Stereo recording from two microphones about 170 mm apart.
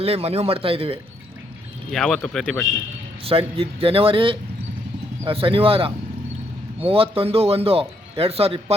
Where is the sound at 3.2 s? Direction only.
35° right (ahead or behind).